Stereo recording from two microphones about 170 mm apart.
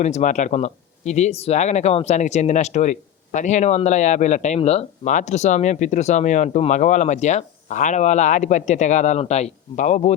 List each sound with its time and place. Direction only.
0.0 s speech: 45° left (ahead or behind)